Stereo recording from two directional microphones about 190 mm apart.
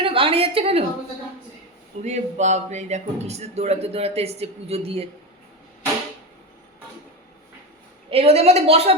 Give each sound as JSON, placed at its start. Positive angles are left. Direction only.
{"t": 0.0, "sound": "a woman's voice", "side_deg": -30}
{"t": 2.0, "sound": "a man's voice", "side_deg": -35}
{"t": 8.1, "sound": "a man's voice", "side_deg": -30}